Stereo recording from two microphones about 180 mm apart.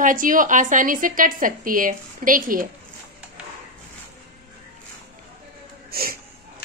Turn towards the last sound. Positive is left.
turn(degrees=-55)  # may be behind; listen again after turning